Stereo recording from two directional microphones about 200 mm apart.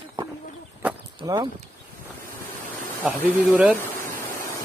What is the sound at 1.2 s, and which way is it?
Speech, 20° right (ahead or behind).